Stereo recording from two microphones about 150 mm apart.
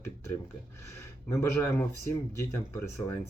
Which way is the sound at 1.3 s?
15° left (ahead or behind).